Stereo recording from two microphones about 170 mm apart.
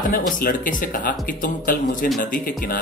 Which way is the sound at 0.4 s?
55° left (ahead or behind).